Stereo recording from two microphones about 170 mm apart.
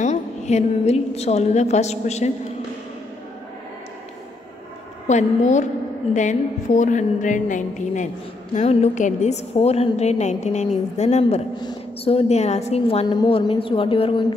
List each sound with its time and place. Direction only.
0.0 s a woman's voice: 40° left (ahead or behind)
5.0 s a woman's voice: 45° left (ahead or behind)